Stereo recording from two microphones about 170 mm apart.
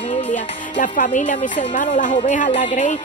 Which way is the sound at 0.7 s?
50° left (ahead or behind).